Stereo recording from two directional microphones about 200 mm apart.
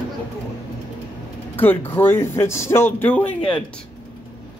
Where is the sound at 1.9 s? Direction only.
10° left (ahead or behind).